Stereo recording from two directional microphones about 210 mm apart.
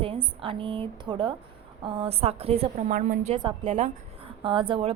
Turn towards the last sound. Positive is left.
turn(degrees=-25)  # may be behind; listen again after turning